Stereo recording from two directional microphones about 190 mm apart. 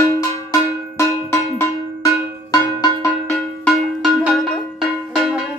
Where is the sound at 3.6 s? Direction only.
Centre (ahead or behind).